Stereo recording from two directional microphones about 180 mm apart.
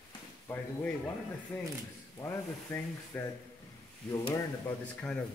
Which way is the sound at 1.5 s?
5° left (ahead or behind).